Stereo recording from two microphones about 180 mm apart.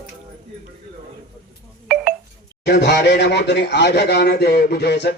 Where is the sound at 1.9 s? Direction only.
5° right (ahead or behind).